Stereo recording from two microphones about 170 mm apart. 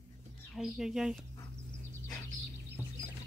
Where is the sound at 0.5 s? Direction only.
Centre (ahead or behind).